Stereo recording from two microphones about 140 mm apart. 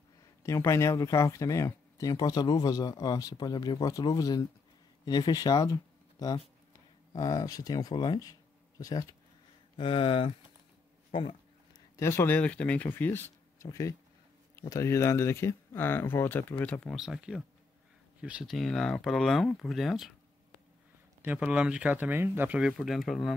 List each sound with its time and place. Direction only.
0.4 s speech: 20° left (ahead or behind)
9.8 s speech: 40° left (ahead or behind)
12.0 s speech: 20° left (ahead or behind)
16.9 s speech: centre (ahead or behind)
21.2 s speech: 10° right (ahead or behind)